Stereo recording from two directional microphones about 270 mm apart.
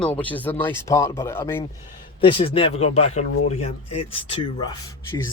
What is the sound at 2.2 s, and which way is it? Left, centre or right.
Speech, centre.